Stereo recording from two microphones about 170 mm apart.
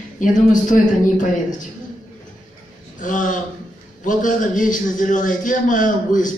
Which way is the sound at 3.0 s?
50° left (ahead or behind).